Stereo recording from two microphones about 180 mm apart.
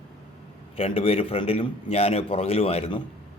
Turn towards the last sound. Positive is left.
turn(degrees=30)  # may be behind; listen again after turning